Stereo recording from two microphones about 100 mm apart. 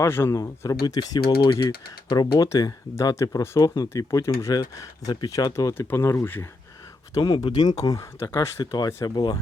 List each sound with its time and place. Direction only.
0.0 s speech: 25° left (ahead or behind)
5.7 s speech: 25° left (ahead or behind)
7.1 s speech: 50° left (ahead or behind); by 8.4 s 30° left (ahead or behind)
8.4 s speech: 40° left (ahead or behind)